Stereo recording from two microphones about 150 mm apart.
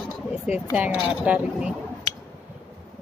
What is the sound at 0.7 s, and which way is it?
Speech, 5° right (ahead or behind).